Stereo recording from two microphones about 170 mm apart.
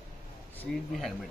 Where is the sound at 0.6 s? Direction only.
Centre (ahead or behind).